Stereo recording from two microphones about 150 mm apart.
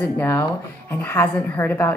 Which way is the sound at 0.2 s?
15° left (ahead or behind).